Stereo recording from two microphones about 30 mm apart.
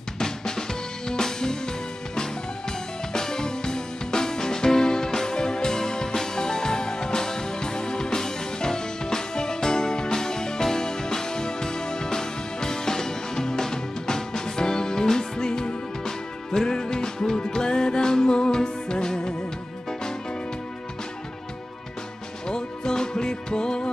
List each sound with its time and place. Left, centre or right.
0.2 s drum kit: left
3.1 s music: left
22.5 s music: left